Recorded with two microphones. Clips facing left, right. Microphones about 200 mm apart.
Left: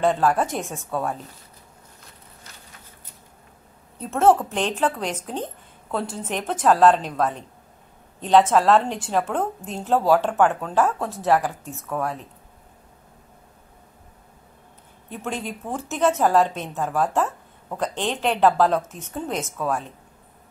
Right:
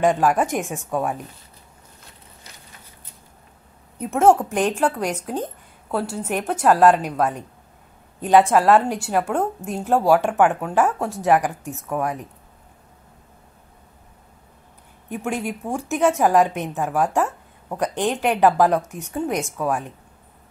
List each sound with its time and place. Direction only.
0.0 s a woman's voice: 15° right (ahead or behind)
4.0 s a woman's voice: 15° right (ahead or behind)
15.0 s a woman's voice: 10° right (ahead or behind)